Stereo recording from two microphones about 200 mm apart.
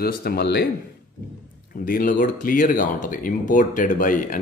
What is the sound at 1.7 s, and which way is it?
Speech, 45° left (ahead or behind).